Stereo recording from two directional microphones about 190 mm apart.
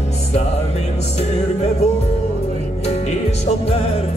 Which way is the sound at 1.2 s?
35° left (ahead or behind).